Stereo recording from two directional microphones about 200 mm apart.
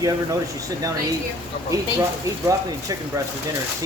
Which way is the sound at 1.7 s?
15° right (ahead or behind).